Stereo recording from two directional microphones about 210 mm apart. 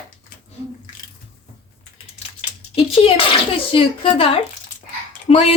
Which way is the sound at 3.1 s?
25° left (ahead or behind).